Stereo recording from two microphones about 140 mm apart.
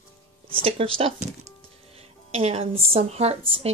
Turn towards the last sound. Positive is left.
turn(degrees=-50)  # may be behind; listen again after turning